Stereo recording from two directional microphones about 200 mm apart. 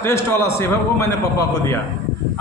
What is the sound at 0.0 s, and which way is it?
Speech, 15° left (ahead or behind).